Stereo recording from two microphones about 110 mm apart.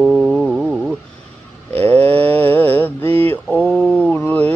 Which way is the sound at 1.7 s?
15° left (ahead or behind).